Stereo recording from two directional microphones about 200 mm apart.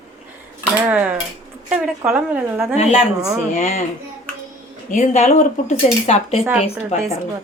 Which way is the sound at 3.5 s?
35° left (ahead or behind).